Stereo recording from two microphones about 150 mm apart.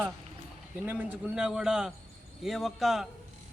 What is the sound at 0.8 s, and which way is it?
A man's voice, 10° right (ahead or behind).